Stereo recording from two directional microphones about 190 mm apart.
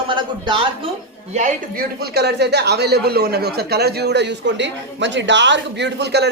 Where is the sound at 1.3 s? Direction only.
40° right (ahead or behind).